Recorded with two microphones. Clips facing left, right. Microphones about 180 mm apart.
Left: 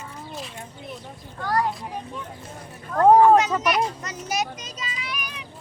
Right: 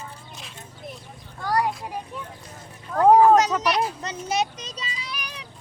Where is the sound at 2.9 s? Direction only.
5° right (ahead or behind).